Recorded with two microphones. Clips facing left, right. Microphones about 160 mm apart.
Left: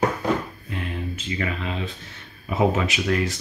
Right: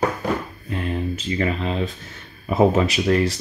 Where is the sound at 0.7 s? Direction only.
35° right (ahead or behind).